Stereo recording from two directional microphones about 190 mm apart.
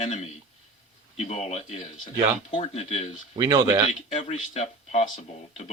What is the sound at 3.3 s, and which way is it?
Speech, 20° right (ahead or behind).